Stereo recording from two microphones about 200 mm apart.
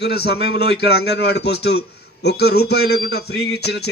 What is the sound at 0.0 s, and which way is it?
A man's voice, 55° left (ahead or behind).